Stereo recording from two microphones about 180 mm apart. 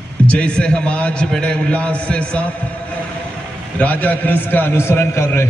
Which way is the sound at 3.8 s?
10° left (ahead or behind).